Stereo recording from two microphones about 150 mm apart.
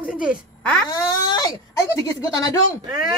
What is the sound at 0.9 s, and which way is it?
Speech, 20° left (ahead or behind).